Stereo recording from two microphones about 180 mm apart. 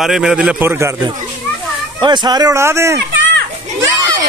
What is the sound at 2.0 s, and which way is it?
Speech, 25° right (ahead or behind).